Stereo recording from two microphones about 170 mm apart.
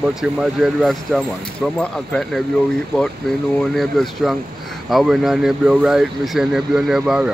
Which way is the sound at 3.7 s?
Centre (ahead or behind).